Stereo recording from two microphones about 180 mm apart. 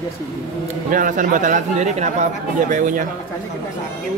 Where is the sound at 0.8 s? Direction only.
50° right (ahead or behind).